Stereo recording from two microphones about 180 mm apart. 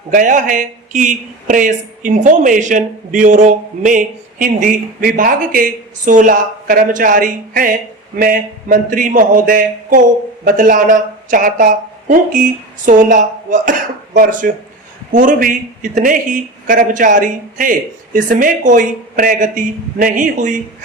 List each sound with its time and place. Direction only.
0.1 s a man's voice: 45° right (ahead or behind)